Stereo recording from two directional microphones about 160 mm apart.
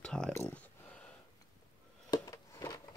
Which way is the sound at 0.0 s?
5° left (ahead or behind).